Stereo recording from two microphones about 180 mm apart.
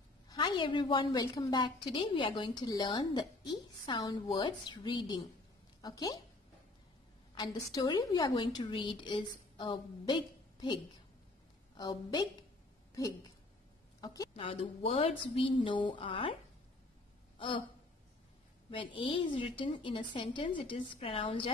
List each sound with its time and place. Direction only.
0.3 s a woman's voice: 25° left (ahead or behind)
7.3 s a woman's voice: 20° left (ahead or behind)
14.0 s speech: 20° left (ahead or behind)
14.3 s a woman's voice: 35° left (ahead or behind)
17.4 s a sound: 25° left (ahead or behind)
18.9 s a woman's voice: 30° left (ahead or behind)